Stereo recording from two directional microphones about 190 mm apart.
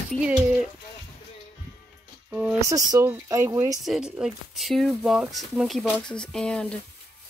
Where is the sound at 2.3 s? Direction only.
10° right (ahead or behind).